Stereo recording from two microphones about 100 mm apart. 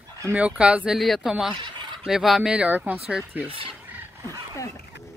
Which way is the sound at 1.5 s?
50° right (ahead or behind).